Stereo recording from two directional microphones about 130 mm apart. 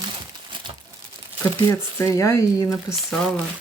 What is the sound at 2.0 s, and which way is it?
Speech, 25° left (ahead or behind).